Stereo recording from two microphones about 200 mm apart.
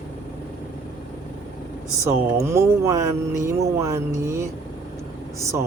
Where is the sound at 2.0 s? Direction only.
15° right (ahead or behind).